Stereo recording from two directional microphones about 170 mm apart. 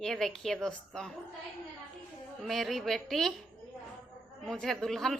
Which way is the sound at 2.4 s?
Centre (ahead or behind).